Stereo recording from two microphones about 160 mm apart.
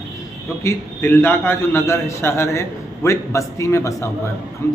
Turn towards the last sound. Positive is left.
turn(degrees=20)  # may be behind; listen again after turning